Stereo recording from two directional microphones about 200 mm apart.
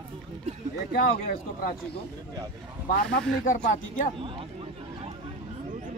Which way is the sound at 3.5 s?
40° left (ahead or behind).